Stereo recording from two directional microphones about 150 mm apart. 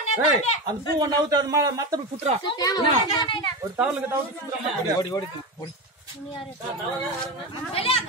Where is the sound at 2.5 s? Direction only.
25° left (ahead or behind).